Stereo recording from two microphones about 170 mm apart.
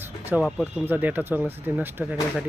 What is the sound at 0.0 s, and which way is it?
Speech, 10° right (ahead or behind).